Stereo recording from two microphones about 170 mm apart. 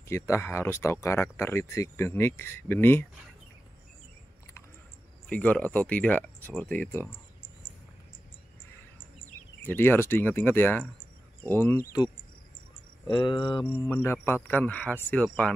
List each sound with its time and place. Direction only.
0.1 s speech: 15° left (ahead or behind)
5.3 s speech: 10° left (ahead or behind)
9.6 s speech: 10° left (ahead or behind)
13.0 s speech: 25° left (ahead or behind)
13.9 s speech: 10° left (ahead or behind)